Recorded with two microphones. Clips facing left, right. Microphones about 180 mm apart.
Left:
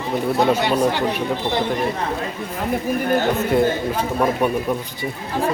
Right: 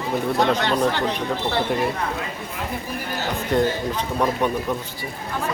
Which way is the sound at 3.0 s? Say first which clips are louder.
Left 10 dB; 55° left (ahead or behind).